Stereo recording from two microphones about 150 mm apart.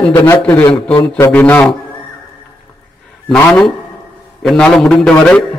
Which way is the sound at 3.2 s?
5° left (ahead or behind).